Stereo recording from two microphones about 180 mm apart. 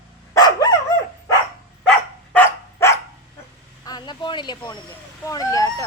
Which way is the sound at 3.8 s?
25° left (ahead or behind).